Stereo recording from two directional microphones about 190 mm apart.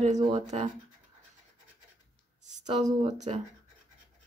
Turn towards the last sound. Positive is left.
turn(degrees=-35)  # may be behind; listen again after turning